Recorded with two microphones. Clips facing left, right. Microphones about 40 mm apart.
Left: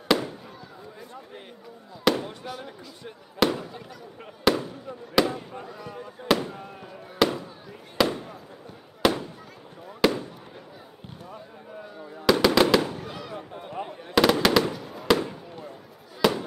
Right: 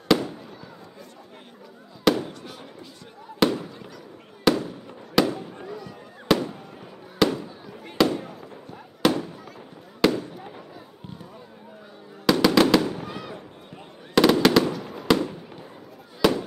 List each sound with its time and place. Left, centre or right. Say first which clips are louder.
2.1 s fireworks: right 2 dB; centre
3.4 s fireworks: right 2 dB; centre
5.2 s fireworks: right 3 dB; centre
12.3 s fireworks: right 1 dB; centre
12.9 s fireworks: right 1 dB; centre
16.2 s fireworks: right 2 dB; centre